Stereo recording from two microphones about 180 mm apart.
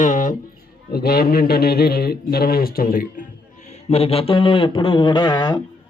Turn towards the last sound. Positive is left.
turn(degrees=25)  # may be behind; listen again after turning